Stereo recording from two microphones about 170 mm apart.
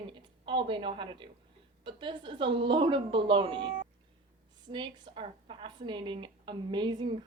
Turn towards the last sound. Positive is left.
turn(degrees=-25)  # may be behind; listen again after turning